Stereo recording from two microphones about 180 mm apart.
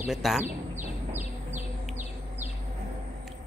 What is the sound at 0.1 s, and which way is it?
Speech, centre (ahead or behind).